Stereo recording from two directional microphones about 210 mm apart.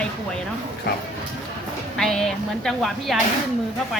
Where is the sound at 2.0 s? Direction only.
Centre (ahead or behind).